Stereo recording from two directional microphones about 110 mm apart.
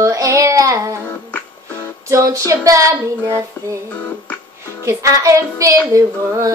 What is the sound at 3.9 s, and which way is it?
Music, 10° left (ahead or behind).